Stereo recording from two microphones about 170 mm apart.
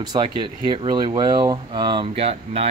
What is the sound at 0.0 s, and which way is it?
A man's voice, 25° right (ahead or behind).